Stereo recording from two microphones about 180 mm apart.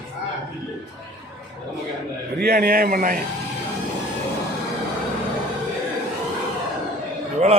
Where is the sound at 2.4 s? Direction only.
60° right (ahead or behind).